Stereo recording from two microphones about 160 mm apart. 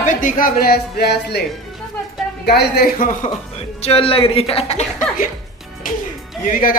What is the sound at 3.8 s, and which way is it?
Speech, 35° left (ahead or behind).